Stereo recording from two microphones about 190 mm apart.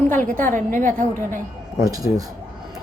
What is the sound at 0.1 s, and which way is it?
A woman's voice, 45° right (ahead or behind).